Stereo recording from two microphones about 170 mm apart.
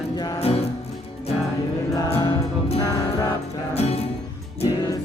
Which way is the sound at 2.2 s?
30° left (ahead or behind).